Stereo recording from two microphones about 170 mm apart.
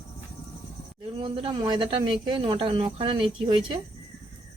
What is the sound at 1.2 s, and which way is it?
A woman's voice, 30° right (ahead or behind).